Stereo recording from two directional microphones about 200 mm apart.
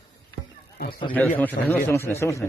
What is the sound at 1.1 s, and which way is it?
A man's voice, 10° left (ahead or behind).